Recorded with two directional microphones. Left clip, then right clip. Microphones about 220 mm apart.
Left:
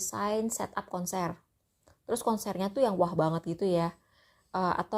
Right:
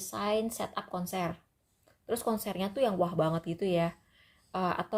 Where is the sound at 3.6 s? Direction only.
25° left (ahead or behind).